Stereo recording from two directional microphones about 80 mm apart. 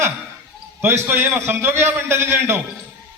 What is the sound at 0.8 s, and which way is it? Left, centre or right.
A man's voice, right.